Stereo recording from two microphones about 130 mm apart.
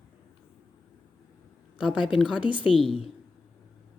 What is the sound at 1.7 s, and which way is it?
Speech, 5° right (ahead or behind).